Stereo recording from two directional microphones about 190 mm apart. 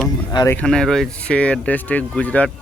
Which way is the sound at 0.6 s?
5° left (ahead or behind).